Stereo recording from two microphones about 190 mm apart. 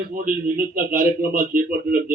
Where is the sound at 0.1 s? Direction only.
50° right (ahead or behind).